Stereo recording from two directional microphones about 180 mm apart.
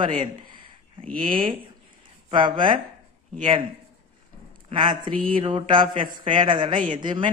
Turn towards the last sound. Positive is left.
turn(degrees=-25)  # may be behind; listen again after turning